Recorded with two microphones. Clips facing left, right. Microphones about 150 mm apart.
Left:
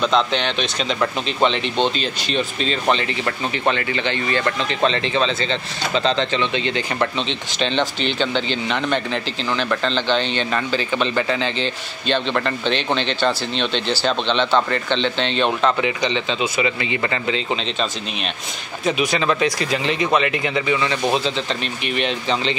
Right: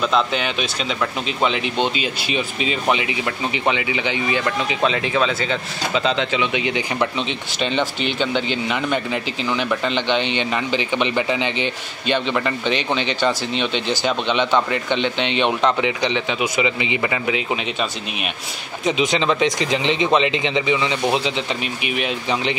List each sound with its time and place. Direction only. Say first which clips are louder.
0.0 s speech: left 1 dB; 5° right (ahead or behind)
18.9 s a man's voice: right 1 dB; 20° right (ahead or behind)
21.8 s speech: left 2 dB; 5° right (ahead or behind)